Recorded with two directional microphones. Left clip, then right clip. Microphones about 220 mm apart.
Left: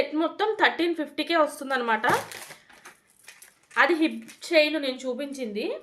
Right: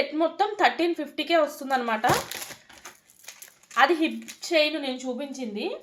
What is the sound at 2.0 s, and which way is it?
Crumpling, 45° right (ahead or behind).